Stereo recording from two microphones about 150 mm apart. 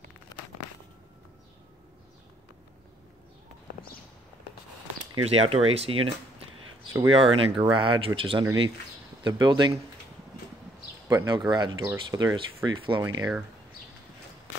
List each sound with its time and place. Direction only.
5.2 s speech: 40° right (ahead or behind)
11.1 s speech: 25° right (ahead or behind)
12.6 s speech: 35° right (ahead or behind)